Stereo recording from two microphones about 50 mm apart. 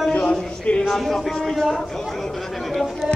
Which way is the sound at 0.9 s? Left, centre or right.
Centre.